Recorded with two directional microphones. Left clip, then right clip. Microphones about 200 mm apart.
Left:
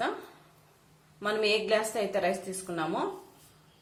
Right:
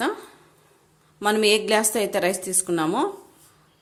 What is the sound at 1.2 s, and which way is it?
A woman's voice, 60° right (ahead or behind).